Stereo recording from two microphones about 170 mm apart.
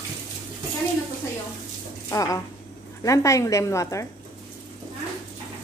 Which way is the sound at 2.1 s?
20° left (ahead or behind).